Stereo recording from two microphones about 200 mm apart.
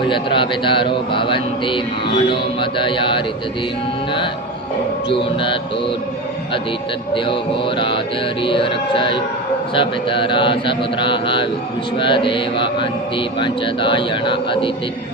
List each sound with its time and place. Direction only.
0.1 s speech: 25° left (ahead or behind)
5.0 s speech: 25° left (ahead or behind)
8.4 s speech: 25° left (ahead or behind)